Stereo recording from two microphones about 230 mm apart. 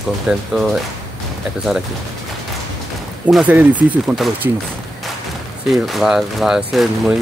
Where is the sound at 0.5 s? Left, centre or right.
Centre.